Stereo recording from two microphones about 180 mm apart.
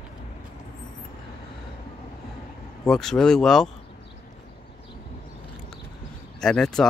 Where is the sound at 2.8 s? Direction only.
Centre (ahead or behind).